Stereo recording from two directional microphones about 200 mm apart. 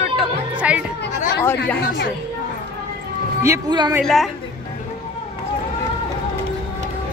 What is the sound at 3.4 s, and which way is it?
Speech, 15° right (ahead or behind).